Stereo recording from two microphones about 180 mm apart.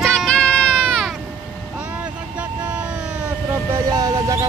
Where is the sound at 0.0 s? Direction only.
Centre (ahead or behind).